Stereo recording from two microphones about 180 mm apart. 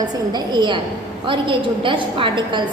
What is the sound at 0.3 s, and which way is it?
A woman's voice, 25° right (ahead or behind).